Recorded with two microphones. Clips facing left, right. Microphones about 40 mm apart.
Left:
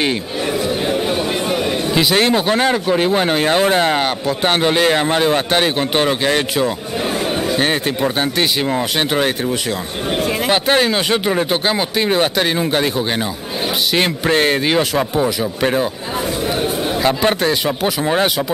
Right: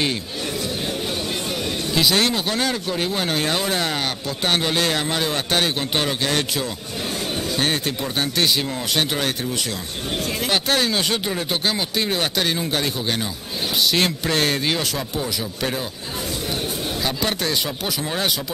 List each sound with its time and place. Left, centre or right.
0.8 s speech: left
13.9 s speech: left
17.0 s speech: left